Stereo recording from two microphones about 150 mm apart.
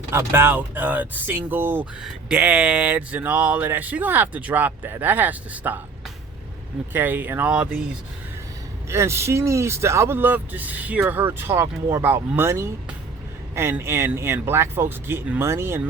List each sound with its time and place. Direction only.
0.1 s speech: 15° right (ahead or behind)
6.9 s speech: 15° right (ahead or behind)
8.9 s speech: 20° right (ahead or behind)